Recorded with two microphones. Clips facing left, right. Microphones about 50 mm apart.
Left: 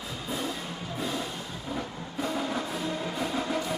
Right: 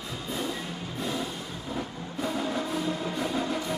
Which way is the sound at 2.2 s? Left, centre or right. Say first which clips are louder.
Right 1 dB; centre.